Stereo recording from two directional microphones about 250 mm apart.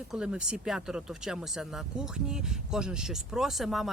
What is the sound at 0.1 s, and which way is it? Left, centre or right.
Speech, centre.